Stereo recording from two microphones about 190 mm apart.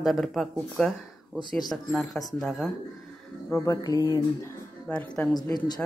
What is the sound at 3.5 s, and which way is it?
Speech, 15° left (ahead or behind).